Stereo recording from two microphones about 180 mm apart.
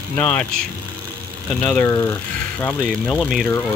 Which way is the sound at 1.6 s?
10° left (ahead or behind).